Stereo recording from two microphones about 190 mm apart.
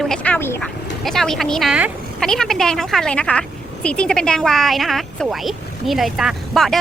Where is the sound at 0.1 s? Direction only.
5° left (ahead or behind).